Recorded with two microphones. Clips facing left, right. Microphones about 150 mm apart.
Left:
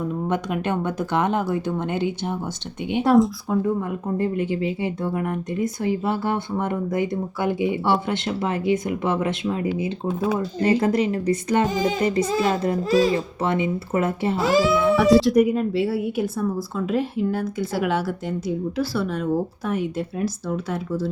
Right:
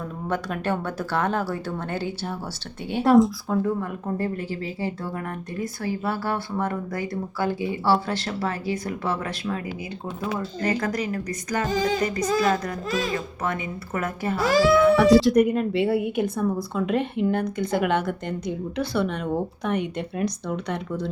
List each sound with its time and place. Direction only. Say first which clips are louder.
0.3 s speech: right 1 dB; 20° left (ahead or behind)
3.0 s speech: even; centre (ahead or behind)
4.2 s speech: left 5 dB; 20° left (ahead or behind)
14.9 s speech: even; centre (ahead or behind)